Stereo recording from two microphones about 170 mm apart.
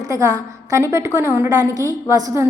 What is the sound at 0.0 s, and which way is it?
A woman's voice, 20° right (ahead or behind).